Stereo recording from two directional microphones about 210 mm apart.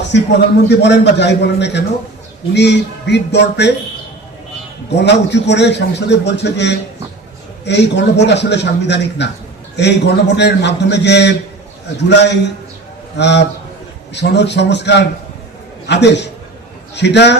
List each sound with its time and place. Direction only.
0.7 s a man's voice: 55° left (ahead or behind)
4.9 s a man's voice: 55° left (ahead or behind)